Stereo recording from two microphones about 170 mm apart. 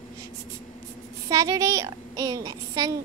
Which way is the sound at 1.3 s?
20° right (ahead or behind).